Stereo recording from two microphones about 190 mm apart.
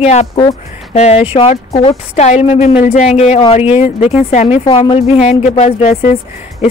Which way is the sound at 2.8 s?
50° left (ahead or behind).